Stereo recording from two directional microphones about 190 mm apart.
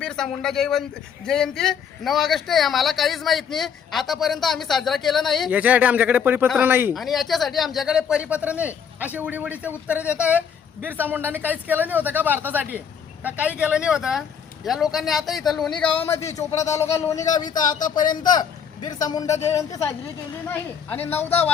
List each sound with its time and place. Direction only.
0.0 s speech: 5° left (ahead or behind)
6.9 s speech: centre (ahead or behind); by 17.5 s 20° left (ahead or behind)
17.5 s speech: 45° left (ahead or behind)
18.2 s speech: 20° left (ahead or behind)